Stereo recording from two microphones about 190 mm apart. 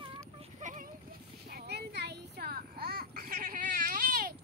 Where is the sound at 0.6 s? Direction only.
40° right (ahead or behind).